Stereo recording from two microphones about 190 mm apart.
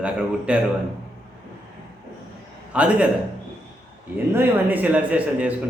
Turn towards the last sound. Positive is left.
turn(degrees=-5)  # may be behind; listen again after turning